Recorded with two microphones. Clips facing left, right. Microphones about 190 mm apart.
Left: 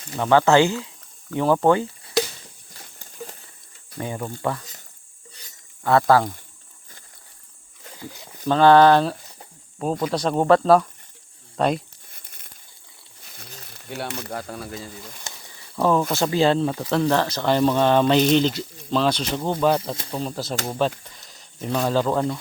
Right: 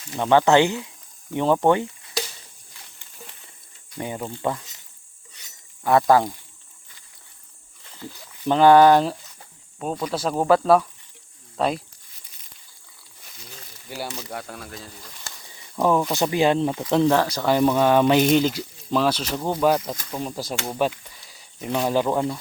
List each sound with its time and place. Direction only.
0.2 s speech: 20° right (ahead or behind)
2.7 s a sound: 40° left (ahead or behind)
3.9 s speech: 15° right (ahead or behind)
5.8 s speech: 15° right (ahead or behind)
8.4 s speech: 15° right (ahead or behind)
9.7 s speech: centre (ahead or behind)
12.1 s crumpling: 55° left (ahead or behind)
14.3 s speech: centre (ahead or behind)
15.8 s speech: 15° right (ahead or behind)